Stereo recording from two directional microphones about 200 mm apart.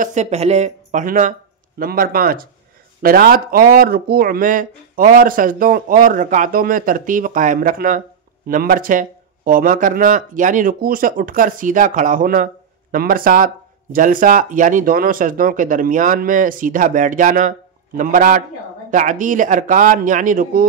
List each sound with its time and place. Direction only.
0.0 s speech: 35° right (ahead or behind)